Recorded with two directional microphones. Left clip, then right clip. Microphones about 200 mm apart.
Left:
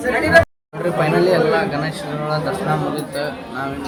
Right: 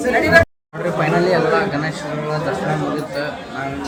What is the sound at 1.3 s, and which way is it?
Speech, centre (ahead or behind).